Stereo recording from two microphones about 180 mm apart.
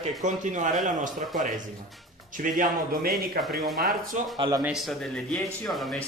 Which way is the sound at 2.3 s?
50° right (ahead or behind).